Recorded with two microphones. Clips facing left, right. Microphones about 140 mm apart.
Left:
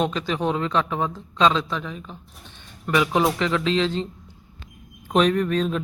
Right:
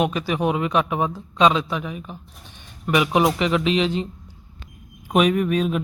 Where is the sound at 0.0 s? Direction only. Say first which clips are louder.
Right 2 dB; 10° right (ahead or behind).